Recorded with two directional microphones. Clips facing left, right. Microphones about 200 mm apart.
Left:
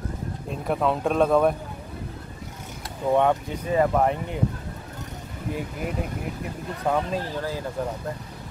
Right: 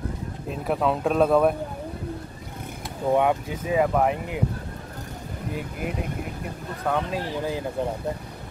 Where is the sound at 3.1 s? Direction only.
10° right (ahead or behind).